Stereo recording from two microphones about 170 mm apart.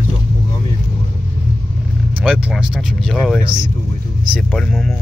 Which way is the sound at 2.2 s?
5° right (ahead or behind).